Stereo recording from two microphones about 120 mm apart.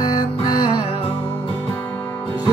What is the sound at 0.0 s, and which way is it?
Music, 35° left (ahead or behind).